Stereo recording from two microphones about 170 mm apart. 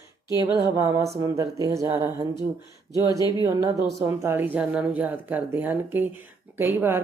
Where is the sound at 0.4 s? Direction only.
15° right (ahead or behind).